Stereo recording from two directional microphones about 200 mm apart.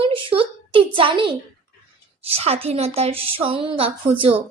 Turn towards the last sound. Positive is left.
turn(degrees=-30)  # may be behind; listen again after turning